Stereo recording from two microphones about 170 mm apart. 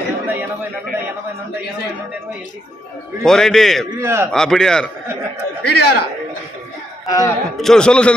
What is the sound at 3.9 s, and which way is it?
Speech, 15° right (ahead or behind).